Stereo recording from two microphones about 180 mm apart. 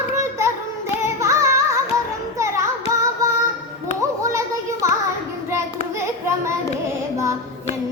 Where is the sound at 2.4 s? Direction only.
15° right (ahead or behind).